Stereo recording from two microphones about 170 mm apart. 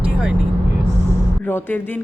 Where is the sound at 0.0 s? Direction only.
5° right (ahead or behind).